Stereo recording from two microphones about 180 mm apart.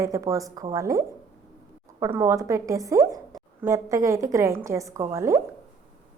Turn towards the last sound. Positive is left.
turn(degrees=-15)  # may be behind; listen again after turning